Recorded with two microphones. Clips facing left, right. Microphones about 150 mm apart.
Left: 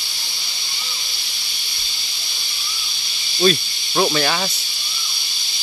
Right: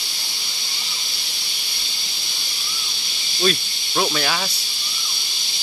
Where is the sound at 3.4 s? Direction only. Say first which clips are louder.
Left 4 dB; 5° left (ahead or behind).